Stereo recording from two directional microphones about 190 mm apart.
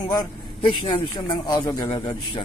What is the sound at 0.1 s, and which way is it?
A man's voice, 25° left (ahead or behind).